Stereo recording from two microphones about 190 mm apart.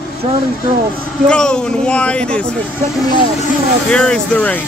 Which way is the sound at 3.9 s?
5° left (ahead or behind).